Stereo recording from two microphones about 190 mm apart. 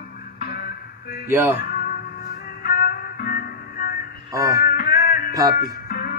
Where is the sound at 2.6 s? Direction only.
50° left (ahead or behind).